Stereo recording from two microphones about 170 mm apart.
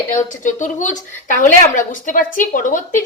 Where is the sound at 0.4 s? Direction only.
45° left (ahead or behind).